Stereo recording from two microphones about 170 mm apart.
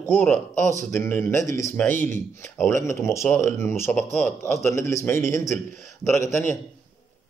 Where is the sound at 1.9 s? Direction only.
50° right (ahead or behind).